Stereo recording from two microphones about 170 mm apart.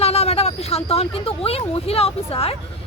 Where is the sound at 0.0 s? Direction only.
40° left (ahead or behind).